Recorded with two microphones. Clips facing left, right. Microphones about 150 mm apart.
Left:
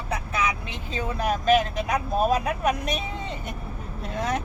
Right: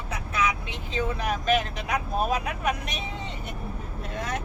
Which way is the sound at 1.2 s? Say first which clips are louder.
Left 6 dB; 40° left (ahead or behind).